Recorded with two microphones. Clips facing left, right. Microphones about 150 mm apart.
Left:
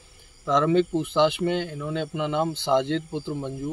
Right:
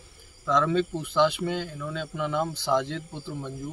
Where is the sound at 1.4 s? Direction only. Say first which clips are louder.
Left 5 dB; 65° left (ahead or behind).